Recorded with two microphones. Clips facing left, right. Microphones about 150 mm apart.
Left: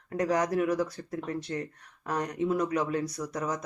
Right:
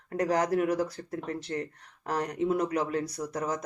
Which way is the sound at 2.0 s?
30° right (ahead or behind).